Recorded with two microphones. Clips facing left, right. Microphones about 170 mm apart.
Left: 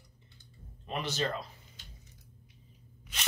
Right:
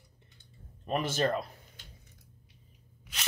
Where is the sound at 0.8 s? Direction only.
50° right (ahead or behind).